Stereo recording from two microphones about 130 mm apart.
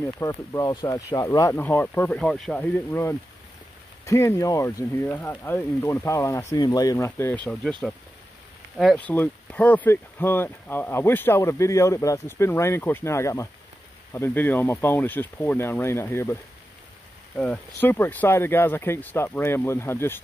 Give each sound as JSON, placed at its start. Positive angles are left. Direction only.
{"t": 0.0, "sound": "speech", "side_deg": 20}
{"t": 8.7, "sound": "speech", "side_deg": 5}
{"t": 17.4, "sound": "speech", "side_deg": 10}